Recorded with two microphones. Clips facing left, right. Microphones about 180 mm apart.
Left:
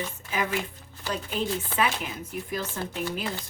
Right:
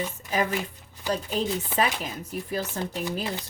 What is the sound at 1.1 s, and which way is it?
Chopping, 40° right (ahead or behind).